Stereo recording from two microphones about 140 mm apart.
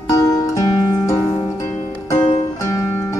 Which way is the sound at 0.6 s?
25° left (ahead or behind).